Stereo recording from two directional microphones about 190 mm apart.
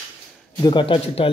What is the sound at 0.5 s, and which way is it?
Speech, 25° left (ahead or behind).